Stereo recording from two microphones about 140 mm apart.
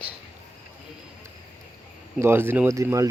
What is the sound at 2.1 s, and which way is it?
Speech, 15° right (ahead or behind).